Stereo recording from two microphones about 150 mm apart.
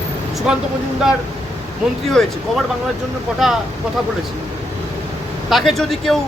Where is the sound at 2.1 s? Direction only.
5° left (ahead or behind).